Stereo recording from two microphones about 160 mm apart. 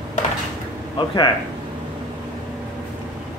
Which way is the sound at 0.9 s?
25° left (ahead or behind).